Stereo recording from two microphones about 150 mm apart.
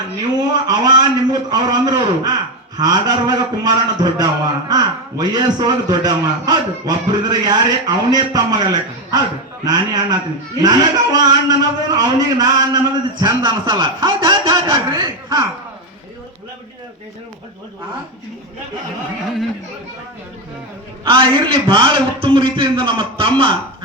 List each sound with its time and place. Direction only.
0.5 s a man's voice: 25° right (ahead or behind)
21.0 s a man's voice: 35° right (ahead or behind)